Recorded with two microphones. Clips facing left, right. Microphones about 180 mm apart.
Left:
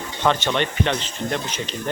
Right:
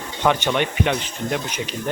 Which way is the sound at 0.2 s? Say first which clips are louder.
Right 1 dB; 10° right (ahead or behind).